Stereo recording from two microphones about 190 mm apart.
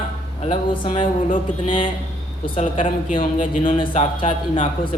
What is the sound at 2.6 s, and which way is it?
Speech, 40° left (ahead or behind).